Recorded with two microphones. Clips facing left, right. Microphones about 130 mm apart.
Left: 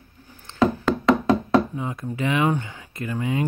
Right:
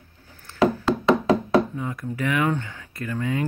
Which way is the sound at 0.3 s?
20° left (ahead or behind).